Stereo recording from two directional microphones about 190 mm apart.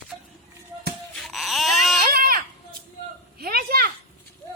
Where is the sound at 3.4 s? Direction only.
50° right (ahead or behind).